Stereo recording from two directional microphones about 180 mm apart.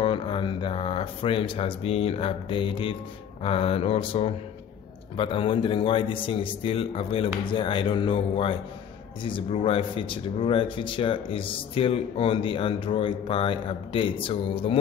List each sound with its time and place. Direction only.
0.0 s speech: 30° left (ahead or behind)